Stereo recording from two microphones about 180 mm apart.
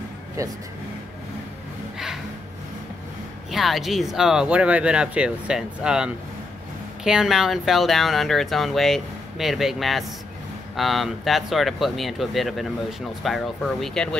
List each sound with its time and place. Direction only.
0.4 s speech: 15° right (ahead or behind)
3.5 s speech: centre (ahead or behind)